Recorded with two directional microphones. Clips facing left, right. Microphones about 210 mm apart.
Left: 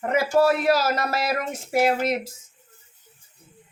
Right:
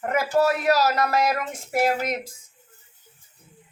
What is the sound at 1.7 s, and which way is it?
Speech, 25° left (ahead or behind).